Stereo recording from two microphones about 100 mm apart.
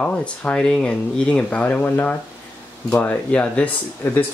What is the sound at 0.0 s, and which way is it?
Speech, 10° left (ahead or behind).